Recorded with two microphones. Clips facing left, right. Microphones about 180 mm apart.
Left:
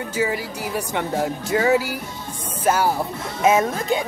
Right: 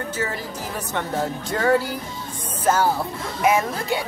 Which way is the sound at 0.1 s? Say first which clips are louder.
Left 4 dB; 10° left (ahead or behind).